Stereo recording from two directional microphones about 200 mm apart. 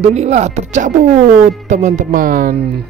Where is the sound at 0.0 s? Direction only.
35° right (ahead or behind).